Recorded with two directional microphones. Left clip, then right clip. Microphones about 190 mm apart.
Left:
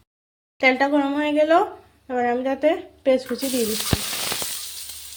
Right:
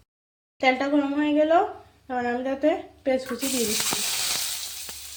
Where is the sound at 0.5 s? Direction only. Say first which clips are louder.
Left 4 dB; 35° left (ahead or behind).